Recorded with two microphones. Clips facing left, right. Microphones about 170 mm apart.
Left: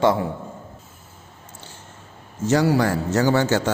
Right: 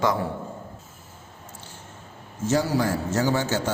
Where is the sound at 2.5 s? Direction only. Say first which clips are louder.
Left 4 dB; 70° left (ahead or behind).